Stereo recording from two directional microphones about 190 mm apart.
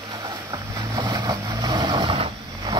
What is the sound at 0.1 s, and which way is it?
Vehicle, 20° right (ahead or behind).